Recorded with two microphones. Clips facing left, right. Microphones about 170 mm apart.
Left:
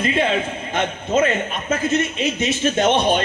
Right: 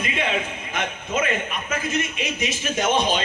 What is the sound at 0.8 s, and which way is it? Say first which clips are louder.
A man's voice: left 7 dB; 30° left (ahead or behind).